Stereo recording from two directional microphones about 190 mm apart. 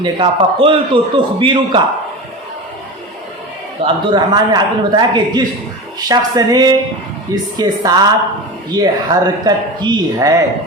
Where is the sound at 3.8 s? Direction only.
30° right (ahead or behind).